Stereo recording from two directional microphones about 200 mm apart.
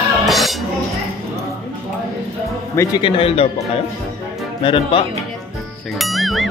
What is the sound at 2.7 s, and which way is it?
Speech, 15° left (ahead or behind).